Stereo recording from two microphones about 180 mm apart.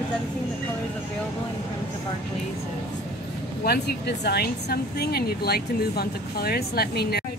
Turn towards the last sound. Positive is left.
turn(degrees=60)  # may be behind; listen again after turning